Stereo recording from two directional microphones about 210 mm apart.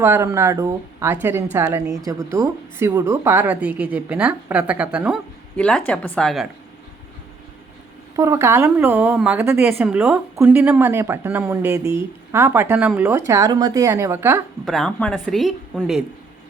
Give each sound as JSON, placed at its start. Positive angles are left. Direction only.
{"t": 0.0, "sound": "a woman's voice", "side_deg": -10}
{"t": 8.1, "sound": "a woman's voice", "side_deg": -15}
{"t": 11.8, "sound": "a woman's voice", "side_deg": 25}
{"t": 12.3, "sound": "a woman's voice", "side_deg": -10}
{"t": 14.6, "sound": "speech", "side_deg": 0}